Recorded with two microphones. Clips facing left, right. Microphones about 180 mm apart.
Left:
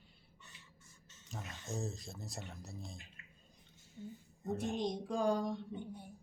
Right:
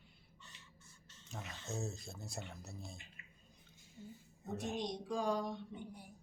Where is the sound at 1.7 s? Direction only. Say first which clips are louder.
Left 2 dB; centre (ahead or behind).